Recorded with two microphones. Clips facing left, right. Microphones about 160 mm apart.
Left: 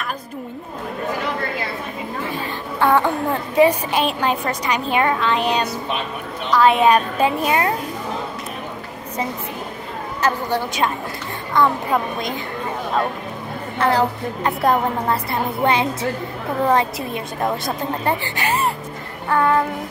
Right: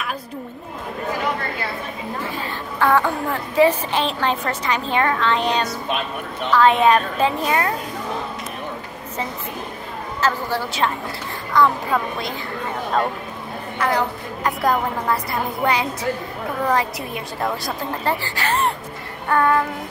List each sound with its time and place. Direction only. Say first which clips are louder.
2.3 s speech: left 2 dB; 20° left (ahead or behind)
10.2 s a woman's voice: left 2 dB; 15° left (ahead or behind)
13.7 s a woman's voice: left 3 dB; 30° left (ahead or behind)